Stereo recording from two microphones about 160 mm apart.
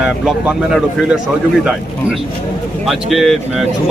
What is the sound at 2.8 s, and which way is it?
Speech, centre (ahead or behind).